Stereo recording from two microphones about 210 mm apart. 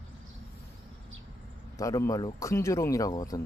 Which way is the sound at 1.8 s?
15° left (ahead or behind).